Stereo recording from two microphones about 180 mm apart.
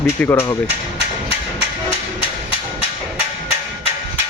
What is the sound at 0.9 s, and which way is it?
Hammer, 35° left (ahead or behind).